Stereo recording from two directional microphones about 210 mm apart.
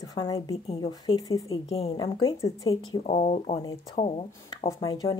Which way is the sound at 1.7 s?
30° left (ahead or behind).